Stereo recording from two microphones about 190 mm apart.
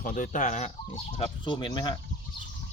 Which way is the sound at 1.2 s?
25° left (ahead or behind).